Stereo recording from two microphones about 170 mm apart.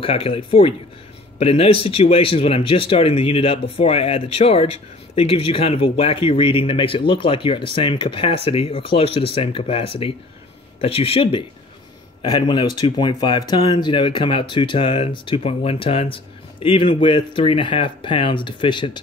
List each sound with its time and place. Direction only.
0.0 s speech: 35° left (ahead or behind)